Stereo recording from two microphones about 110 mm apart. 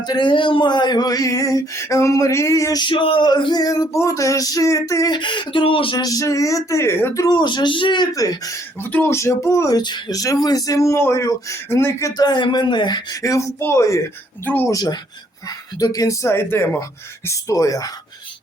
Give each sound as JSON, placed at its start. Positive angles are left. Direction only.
{"t": 0.0, "sound": "speech", "side_deg": 45}
{"t": 2.8, "sound": "speech", "side_deg": 50}
{"t": 5.1, "sound": "speech", "side_deg": 45}
{"t": 6.0, "sound": "speech", "side_deg": 30}
{"t": 8.1, "sound": "speech", "side_deg": 30}
{"t": 8.8, "sound": "speech", "side_deg": 20}
{"t": 12.1, "sound": "speech", "side_deg": 40}
{"t": 14.7, "sound": "speech", "side_deg": 35}